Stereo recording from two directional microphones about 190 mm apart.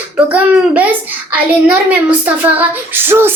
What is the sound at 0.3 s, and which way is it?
A child's voice, 5° right (ahead or behind).